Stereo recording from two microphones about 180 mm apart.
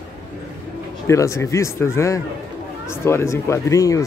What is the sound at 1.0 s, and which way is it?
Speech, 15° left (ahead or behind).